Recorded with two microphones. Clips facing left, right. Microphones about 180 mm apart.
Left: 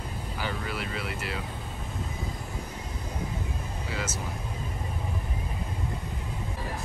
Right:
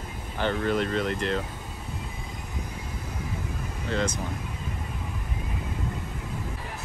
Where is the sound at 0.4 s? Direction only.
5° left (ahead or behind).